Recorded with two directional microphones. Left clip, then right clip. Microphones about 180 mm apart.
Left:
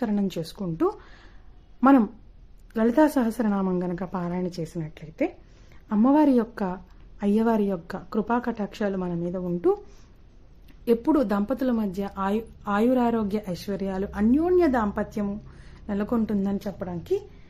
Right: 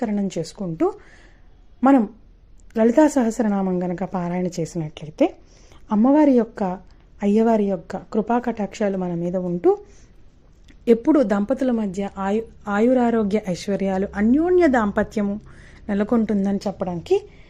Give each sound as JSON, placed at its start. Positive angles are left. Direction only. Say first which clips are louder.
{"t": 0.0, "sound": "a woman's voice", "louder": "right 3 dB", "side_deg": -5}
{"t": 6.0, "sound": "a woman's voice", "louder": "right 4 dB", "side_deg": -10}